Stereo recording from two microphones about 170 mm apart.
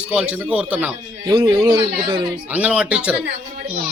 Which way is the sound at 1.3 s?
25° right (ahead or behind).